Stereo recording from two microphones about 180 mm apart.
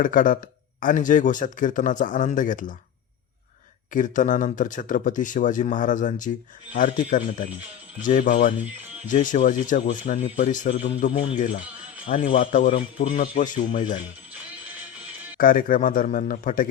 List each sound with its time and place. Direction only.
0.0 s speech: 50° left (ahead or behind)
3.9 s speech: 45° left (ahead or behind)
15.4 s speech: 50° left (ahead or behind)